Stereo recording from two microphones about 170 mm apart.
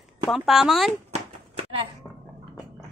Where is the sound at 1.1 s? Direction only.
35° right (ahead or behind).